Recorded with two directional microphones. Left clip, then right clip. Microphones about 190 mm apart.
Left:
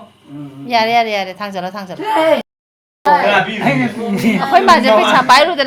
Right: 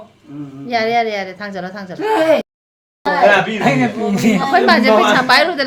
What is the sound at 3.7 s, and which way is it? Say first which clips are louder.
Speech: right 1 dB; 40° right (ahead or behind).